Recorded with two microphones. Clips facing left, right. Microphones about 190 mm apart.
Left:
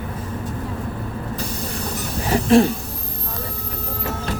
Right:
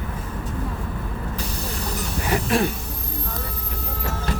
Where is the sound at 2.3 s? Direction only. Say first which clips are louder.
Left 8 dB; 35° left (ahead or behind).